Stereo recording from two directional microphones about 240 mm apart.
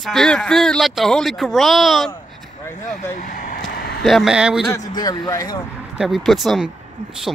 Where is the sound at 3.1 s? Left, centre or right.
Left.